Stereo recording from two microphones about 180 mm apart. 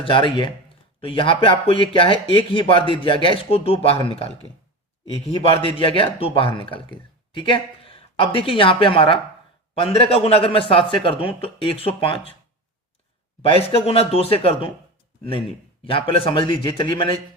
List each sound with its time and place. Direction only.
0.0 s a man's voice: 30° left (ahead or behind)
5.7 s a man's voice: 30° left (ahead or behind)
13.4 s a man's voice: 35° left (ahead or behind)